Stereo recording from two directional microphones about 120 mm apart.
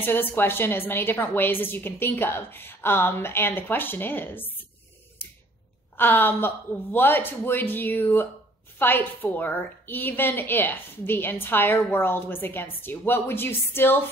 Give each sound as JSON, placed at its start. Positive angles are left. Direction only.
{"t": 0.0, "sound": "a woman's voice", "side_deg": 15}
{"t": 5.9, "sound": "a woman's voice", "side_deg": 15}